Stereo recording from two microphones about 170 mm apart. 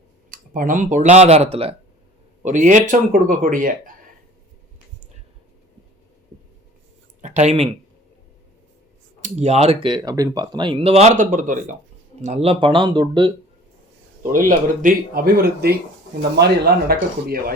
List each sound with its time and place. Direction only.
0.3 s speech: 55° right (ahead or behind); by 1.7 s 35° right (ahead or behind)
2.4 s speech: 45° right (ahead or behind)
7.2 s speech: 45° right (ahead or behind)
9.2 s speech: 40° right (ahead or behind)
12.2 s speech: 35° right (ahead or behind)
14.3 s speech: 55° right (ahead or behind)